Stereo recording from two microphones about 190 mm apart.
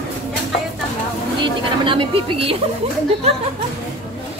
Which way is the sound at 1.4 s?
25° right (ahead or behind).